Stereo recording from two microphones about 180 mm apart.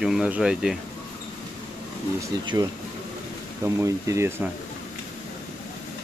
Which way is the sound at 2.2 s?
20° right (ahead or behind).